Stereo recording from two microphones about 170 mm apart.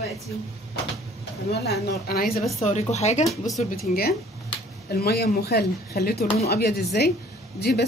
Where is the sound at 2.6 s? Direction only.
40° left (ahead or behind).